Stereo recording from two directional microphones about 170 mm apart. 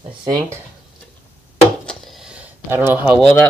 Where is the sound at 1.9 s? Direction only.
Centre (ahead or behind).